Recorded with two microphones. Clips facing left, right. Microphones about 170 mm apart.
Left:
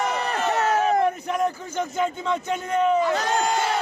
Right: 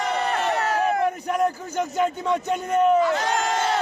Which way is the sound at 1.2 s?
10° right (ahead or behind).